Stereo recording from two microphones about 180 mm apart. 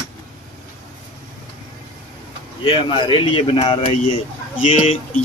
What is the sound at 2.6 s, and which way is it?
Speech, 30° left (ahead or behind).